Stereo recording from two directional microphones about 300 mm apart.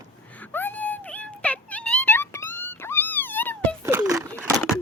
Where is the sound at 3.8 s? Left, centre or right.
Centre.